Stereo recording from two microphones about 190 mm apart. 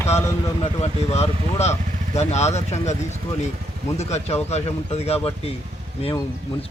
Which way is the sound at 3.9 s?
35° left (ahead or behind).